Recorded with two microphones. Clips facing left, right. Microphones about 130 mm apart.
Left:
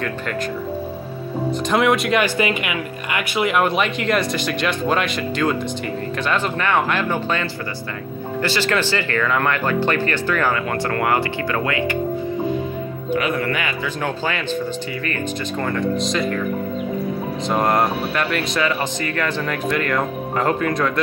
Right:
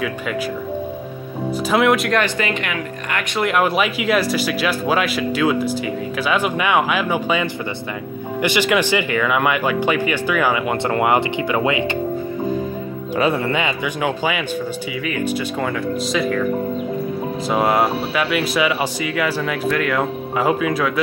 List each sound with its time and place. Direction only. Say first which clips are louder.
1.5 s speech: right 2 dB; centre (ahead or behind); by 12.0 s 20° right (ahead or behind)
13.1 s speech: right 2 dB; 30° right (ahead or behind)
14.0 s speech: right 3 dB; 10° right (ahead or behind)
17.5 s speech: right 1 dB; 5° right (ahead or behind)